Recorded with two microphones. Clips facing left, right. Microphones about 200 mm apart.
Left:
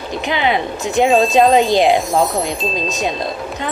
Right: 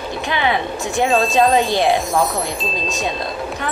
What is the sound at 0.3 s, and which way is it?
Speech, 20° left (ahead or behind).